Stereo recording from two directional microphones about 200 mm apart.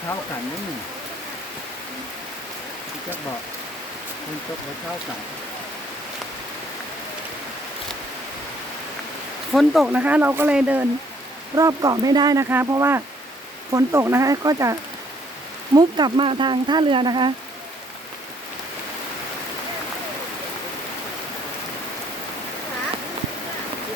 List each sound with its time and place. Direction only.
9.5 s speech: centre (ahead or behind); by 17.3 s 25° right (ahead or behind)